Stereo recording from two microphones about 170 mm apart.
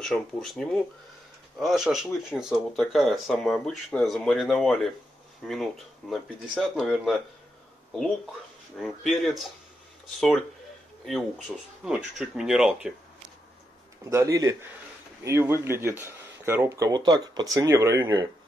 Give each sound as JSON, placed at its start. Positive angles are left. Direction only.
{"t": 0.0, "sound": "speech", "side_deg": 0}
{"t": 8.7, "sound": "speech", "side_deg": 0}
{"t": 11.1, "sound": "speech", "side_deg": 0}
{"t": 14.1, "sound": "speech", "side_deg": -20}